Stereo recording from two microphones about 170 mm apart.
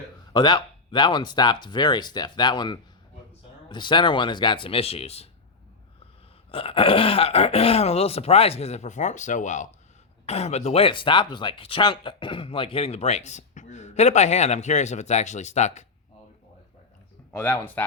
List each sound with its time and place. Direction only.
0.3 s speech: 25° left (ahead or behind)
6.5 s speech: 30° left (ahead or behind)
17.3 s speech: 15° left (ahead or behind)